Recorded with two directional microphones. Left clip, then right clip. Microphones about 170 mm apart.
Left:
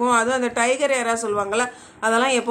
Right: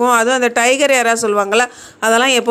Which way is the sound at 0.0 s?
40° right (ahead or behind).